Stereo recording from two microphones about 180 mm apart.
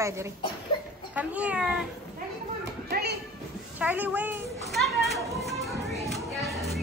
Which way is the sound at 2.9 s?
65° right (ahead or behind).